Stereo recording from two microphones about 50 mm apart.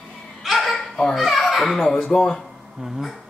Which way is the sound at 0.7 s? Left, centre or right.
Centre.